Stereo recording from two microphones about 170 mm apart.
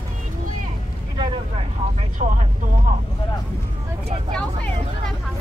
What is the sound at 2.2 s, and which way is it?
Speech, 35° right (ahead or behind).